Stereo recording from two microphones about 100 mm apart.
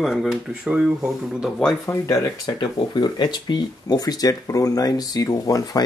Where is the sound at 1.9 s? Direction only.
35° left (ahead or behind).